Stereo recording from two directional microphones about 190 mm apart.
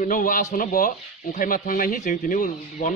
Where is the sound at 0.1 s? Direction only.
45° left (ahead or behind).